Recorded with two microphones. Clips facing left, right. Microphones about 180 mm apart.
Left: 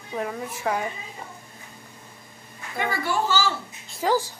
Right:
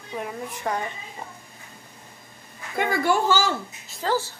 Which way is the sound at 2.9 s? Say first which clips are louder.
Right 4 dB; 50° right (ahead or behind).